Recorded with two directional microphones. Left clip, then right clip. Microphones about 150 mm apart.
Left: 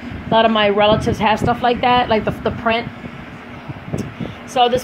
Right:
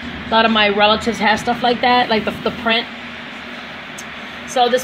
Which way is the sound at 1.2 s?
45° left (ahead or behind).